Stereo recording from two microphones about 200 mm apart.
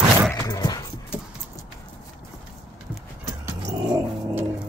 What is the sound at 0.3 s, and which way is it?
Music, 15° left (ahead or behind).